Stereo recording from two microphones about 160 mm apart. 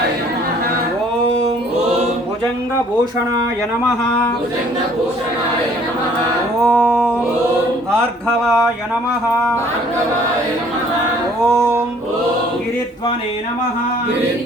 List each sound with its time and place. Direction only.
6.6 s music: 5° left (ahead or behind)